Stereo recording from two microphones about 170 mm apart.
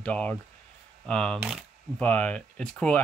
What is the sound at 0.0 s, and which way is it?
Speech, 10° left (ahead or behind).